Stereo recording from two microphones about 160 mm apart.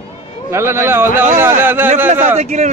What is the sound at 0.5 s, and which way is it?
A man's voice, 15° right (ahead or behind).